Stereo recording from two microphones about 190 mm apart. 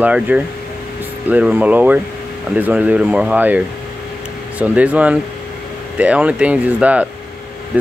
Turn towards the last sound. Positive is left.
turn(degrees=-5)  # may be behind; listen again after turning